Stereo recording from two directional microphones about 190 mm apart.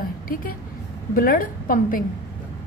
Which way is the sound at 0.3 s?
50° left (ahead or behind).